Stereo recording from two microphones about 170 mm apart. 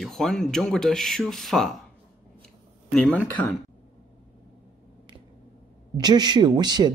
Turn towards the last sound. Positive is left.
turn(degrees=-25)  # may be behind; listen again after turning